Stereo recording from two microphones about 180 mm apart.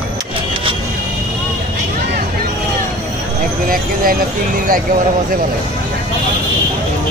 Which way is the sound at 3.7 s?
50° right (ahead or behind).